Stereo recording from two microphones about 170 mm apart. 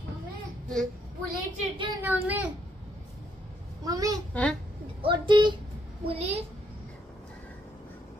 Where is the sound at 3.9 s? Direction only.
20° right (ahead or behind).